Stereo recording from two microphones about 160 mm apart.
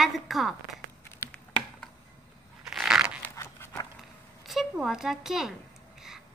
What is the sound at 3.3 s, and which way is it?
Walk, 20° left (ahead or behind).